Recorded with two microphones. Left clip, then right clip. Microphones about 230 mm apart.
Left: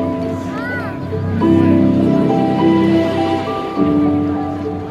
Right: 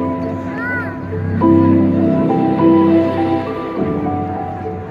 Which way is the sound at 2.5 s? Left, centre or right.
Left.